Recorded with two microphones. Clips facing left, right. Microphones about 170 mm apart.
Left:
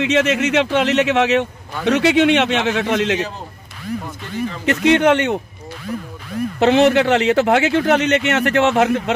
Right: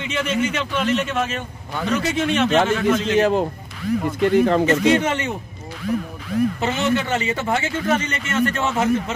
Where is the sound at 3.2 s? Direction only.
70° right (ahead or behind).